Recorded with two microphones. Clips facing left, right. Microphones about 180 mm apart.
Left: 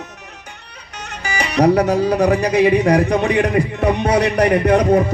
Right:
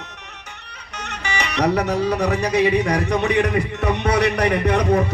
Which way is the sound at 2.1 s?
55° left (ahead or behind).